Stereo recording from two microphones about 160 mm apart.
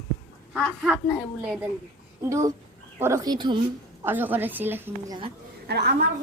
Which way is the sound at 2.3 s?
20° right (ahead or behind).